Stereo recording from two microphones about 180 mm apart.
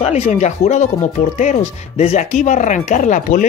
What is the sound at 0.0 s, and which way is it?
Speech, 40° left (ahead or behind).